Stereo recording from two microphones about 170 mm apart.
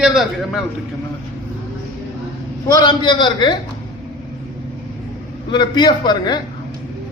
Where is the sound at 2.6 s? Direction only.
25° left (ahead or behind).